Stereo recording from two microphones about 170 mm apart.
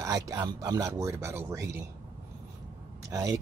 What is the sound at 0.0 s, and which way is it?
Speech, 20° right (ahead or behind).